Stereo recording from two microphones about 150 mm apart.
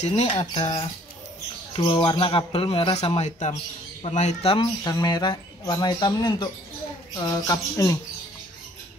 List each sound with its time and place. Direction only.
0.0 s speech: 45° left (ahead or behind)
1.8 s speech: 30° left (ahead or behind)
4.8 s speech: 25° left (ahead or behind)